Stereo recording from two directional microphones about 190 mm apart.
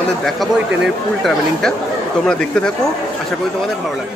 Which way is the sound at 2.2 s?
5° left (ahead or behind).